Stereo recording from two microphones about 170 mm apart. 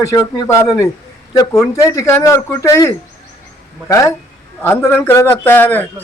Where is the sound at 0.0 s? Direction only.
20° left (ahead or behind).